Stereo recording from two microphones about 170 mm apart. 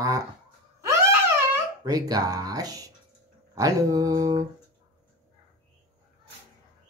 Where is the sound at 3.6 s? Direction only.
20° right (ahead or behind).